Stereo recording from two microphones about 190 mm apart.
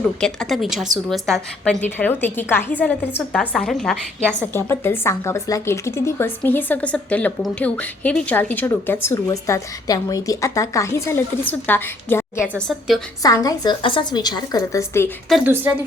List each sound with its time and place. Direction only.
0.2 s a woman's voice: 5° left (ahead or behind)
12.4 s speech: centre (ahead or behind)
13.2 s a woman's voice: 20° left (ahead or behind)